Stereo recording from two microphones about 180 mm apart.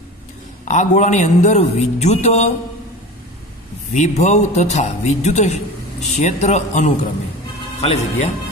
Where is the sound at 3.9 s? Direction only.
40° left (ahead or behind).